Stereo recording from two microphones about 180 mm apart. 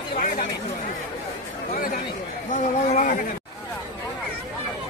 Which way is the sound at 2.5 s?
45° left (ahead or behind).